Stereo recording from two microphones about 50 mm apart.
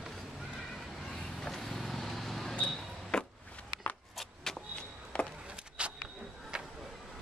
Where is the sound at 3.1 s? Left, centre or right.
Centre.